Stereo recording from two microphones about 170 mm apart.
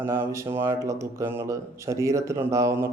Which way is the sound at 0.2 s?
15° right (ahead or behind).